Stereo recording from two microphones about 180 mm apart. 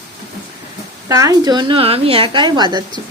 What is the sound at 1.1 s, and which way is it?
Speech, 20° right (ahead or behind).